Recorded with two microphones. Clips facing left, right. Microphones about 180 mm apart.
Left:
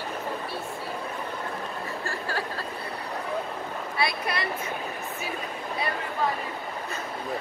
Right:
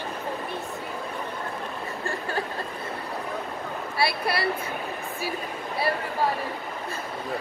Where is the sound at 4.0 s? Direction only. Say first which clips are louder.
Right 3 dB; 30° right (ahead or behind).